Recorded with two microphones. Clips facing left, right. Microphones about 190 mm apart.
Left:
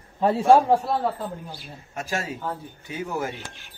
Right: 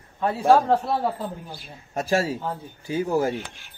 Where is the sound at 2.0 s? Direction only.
35° right (ahead or behind).